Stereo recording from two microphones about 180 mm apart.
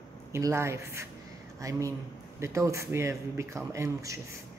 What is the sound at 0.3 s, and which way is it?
A woman's voice, 15° right (ahead or behind).